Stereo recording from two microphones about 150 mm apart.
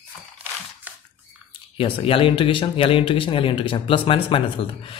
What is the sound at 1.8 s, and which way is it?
Speech, 35° left (ahead or behind).